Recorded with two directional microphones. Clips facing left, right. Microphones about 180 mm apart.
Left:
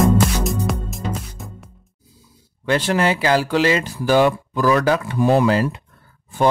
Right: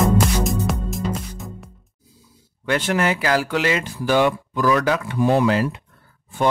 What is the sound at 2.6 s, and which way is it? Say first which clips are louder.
Speech: left 2 dB; 30° left (ahead or behind).